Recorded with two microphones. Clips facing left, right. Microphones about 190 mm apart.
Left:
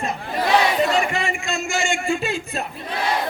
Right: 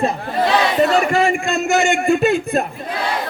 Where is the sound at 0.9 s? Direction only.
45° right (ahead or behind); by 2.6 s 60° right (ahead or behind).